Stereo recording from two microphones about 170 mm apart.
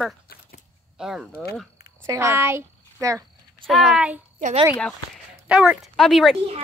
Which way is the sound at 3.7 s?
5° right (ahead or behind).